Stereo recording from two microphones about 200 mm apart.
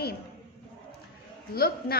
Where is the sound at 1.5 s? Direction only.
50° left (ahead or behind).